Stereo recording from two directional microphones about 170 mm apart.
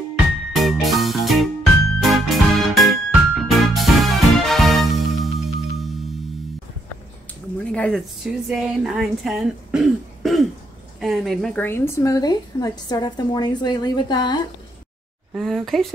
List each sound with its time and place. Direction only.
0.5 s music: centre (ahead or behind)
7.7 s a woman's voice: 5° left (ahead or behind)
11.6 s a woman's voice: 15° left (ahead or behind)
15.3 s speech: centre (ahead or behind)